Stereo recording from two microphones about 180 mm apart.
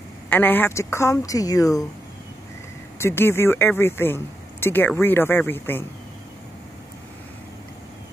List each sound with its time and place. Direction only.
0.3 s speech: 10° left (ahead or behind)
3.0 s speech: 15° left (ahead or behind)